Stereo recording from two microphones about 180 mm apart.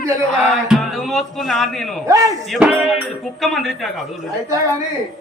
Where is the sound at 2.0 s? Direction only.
20° right (ahead or behind).